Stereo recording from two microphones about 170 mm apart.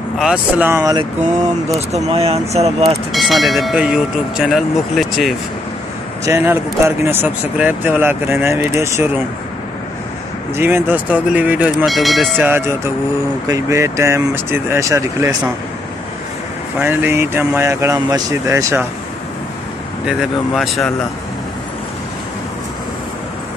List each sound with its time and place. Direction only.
0.2 s speech: 5° right (ahead or behind)
1.9 s speech: 40° right (ahead or behind)
3.1 s speech: centre (ahead or behind)
6.2 s speech: 15° right (ahead or behind)
10.5 s speech: 15° right (ahead or behind)
12.4 s speech: 15° right (ahead or behind)
16.8 s speech: 15° right (ahead or behind)
20.1 s speech: centre (ahead or behind)